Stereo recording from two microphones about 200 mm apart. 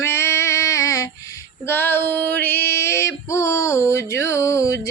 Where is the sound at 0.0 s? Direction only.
15° left (ahead or behind).